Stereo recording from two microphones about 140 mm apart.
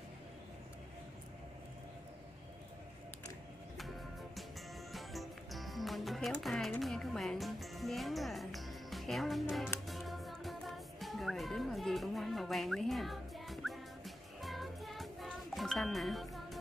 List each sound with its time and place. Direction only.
4.9 s music: centre (ahead or behind)